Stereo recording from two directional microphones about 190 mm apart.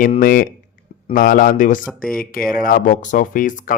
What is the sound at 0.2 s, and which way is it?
Speech, 50° left (ahead or behind).